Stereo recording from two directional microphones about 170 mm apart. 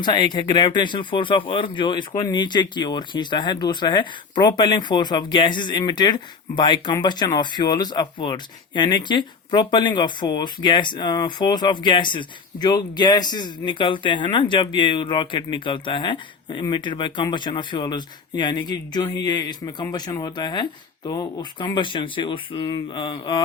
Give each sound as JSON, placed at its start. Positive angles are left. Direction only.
{"t": 0.0, "sound": "speech", "side_deg": 25}